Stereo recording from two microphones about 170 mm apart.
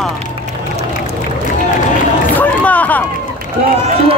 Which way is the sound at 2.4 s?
10° left (ahead or behind).